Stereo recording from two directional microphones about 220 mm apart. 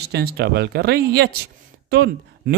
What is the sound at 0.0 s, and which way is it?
Speech, 45° right (ahead or behind).